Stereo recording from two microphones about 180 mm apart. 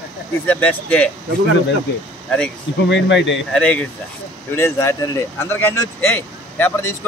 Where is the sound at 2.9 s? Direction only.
90° left.